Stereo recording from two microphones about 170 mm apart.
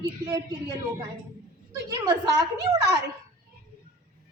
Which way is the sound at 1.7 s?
20° right (ahead or behind).